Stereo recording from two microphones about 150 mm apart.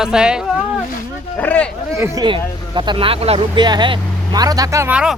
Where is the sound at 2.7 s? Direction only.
35° right (ahead or behind).